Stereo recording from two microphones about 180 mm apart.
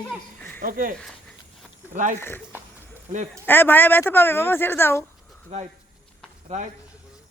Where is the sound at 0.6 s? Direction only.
50° right (ahead or behind).